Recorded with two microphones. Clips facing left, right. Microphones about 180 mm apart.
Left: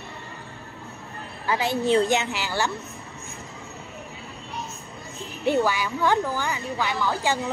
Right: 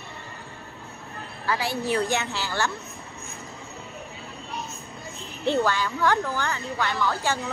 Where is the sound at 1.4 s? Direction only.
20° left (ahead or behind).